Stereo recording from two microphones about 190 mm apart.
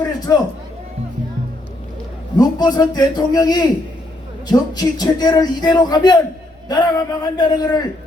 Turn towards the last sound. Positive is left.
turn(degrees=20)  # may be behind; listen again after turning